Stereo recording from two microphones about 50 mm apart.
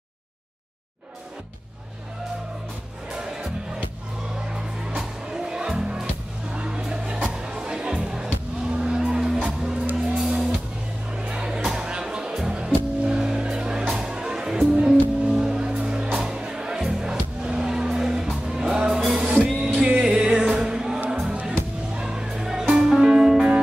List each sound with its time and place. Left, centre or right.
3.1 s music: centre
19.2 s music: right; by 23.5 s centre